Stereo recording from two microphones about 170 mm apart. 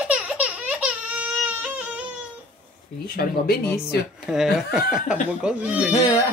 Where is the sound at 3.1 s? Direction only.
60° left (ahead or behind).